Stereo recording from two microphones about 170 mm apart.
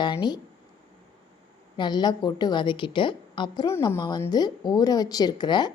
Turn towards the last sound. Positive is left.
turn(degrees=25)  # may be behind; listen again after turning